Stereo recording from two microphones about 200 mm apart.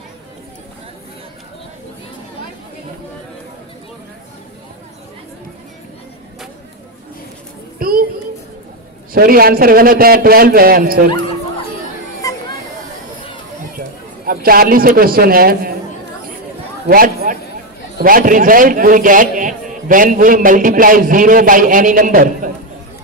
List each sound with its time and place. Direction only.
7.8 s child singing: 45° right (ahead or behind)
9.1 s a man's voice: 45° right (ahead or behind)
12.2 s a sound: 15° left (ahead or behind)
13.7 s a man's voice: 45° right (ahead or behind)
16.9 s a man's voice: 45° right (ahead or behind)